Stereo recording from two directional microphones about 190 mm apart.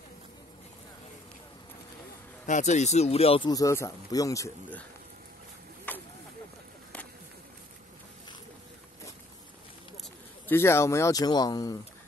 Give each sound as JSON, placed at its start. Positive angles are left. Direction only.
{"t": 2.4, "sound": "speech", "side_deg": 40}
{"t": 3.4, "sound": "speech", "side_deg": 15}
{"t": 5.9, "sound": "snake", "side_deg": 10}
{"t": 10.5, "sound": "speech", "side_deg": 15}